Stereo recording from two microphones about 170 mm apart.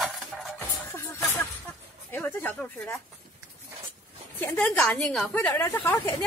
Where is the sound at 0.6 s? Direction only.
15° left (ahead or behind).